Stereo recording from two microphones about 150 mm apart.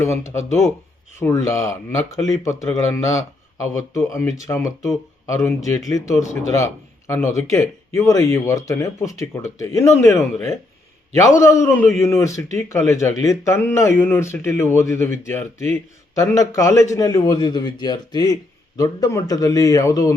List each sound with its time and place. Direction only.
0.0 s speech: 20° left (ahead or behind)
7.3 s speech: 20° left (ahead or behind)